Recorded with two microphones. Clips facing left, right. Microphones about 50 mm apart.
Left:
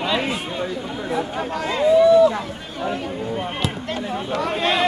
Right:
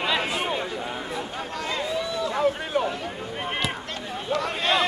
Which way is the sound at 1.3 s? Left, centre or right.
Centre.